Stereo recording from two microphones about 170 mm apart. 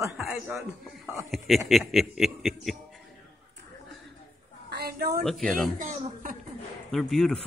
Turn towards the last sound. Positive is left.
turn(degrees=0)  # may be behind; listen again after turning